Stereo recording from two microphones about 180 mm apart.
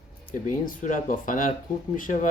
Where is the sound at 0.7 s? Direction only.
50° left (ahead or behind).